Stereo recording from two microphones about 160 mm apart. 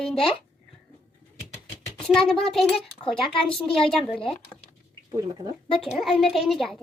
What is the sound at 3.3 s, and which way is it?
Speech, 35° left (ahead or behind).